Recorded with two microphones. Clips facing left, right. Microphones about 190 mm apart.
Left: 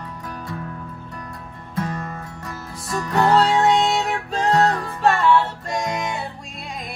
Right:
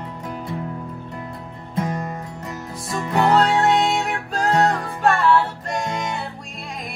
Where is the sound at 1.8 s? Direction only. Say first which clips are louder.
Right 2 dB; 15° right (ahead or behind).